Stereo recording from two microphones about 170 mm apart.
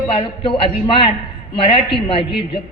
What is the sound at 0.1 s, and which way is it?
A man's voice, 30° left (ahead or behind).